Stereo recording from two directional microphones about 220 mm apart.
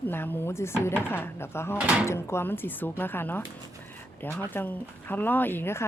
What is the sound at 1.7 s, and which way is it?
Speech, 5° right (ahead or behind).